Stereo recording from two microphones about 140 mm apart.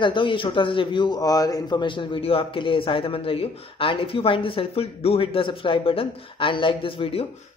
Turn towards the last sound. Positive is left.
turn(degrees=40)  # may be behind; listen again after turning